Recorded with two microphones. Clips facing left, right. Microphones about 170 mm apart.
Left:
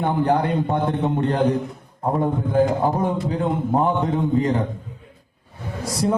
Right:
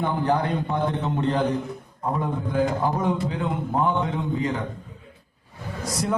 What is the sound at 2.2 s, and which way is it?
A man's voice, 45° left (ahead or behind).